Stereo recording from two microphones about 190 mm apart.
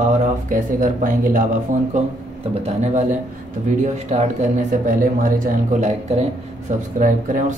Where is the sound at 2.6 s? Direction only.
35° right (ahead or behind).